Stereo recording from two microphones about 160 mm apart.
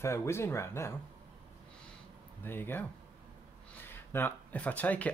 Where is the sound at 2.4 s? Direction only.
15° left (ahead or behind).